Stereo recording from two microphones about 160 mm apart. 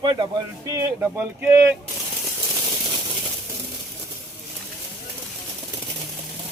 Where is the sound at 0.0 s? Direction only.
25° right (ahead or behind).